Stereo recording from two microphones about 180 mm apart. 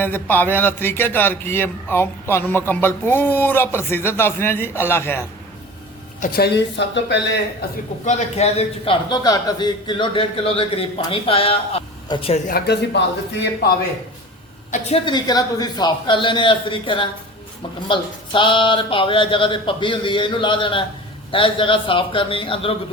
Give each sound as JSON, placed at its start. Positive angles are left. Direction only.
{"t": 0.0, "sound": "a man's voice", "side_deg": 10}
{"t": 6.2, "sound": "a man's voice", "side_deg": 60}
{"t": 8.0, "sound": "a man's voice", "side_deg": 40}
{"t": 12.5, "sound": "a man's voice", "side_deg": 65}
{"t": 15.0, "sound": "speech", "side_deg": 25}